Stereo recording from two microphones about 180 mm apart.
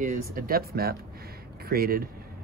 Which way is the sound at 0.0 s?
50° right (ahead or behind).